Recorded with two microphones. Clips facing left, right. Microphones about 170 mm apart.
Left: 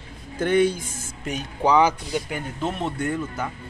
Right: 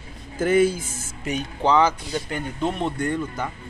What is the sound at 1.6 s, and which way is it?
Speech, 10° left (ahead or behind).